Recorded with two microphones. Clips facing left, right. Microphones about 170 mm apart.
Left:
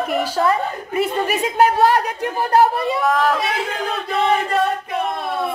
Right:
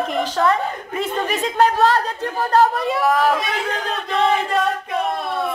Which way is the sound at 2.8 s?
Centre (ahead or behind).